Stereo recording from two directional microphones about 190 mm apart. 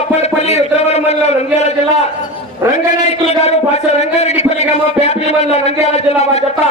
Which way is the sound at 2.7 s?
35° left (ahead or behind).